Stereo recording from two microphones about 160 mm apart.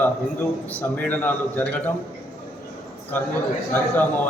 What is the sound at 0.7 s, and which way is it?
Speech, 10° left (ahead or behind).